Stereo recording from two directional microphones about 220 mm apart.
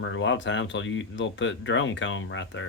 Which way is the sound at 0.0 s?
60° left (ahead or behind).